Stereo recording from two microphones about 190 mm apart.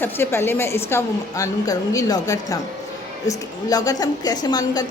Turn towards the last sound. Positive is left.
turn(degrees=20)  # may be behind; listen again after turning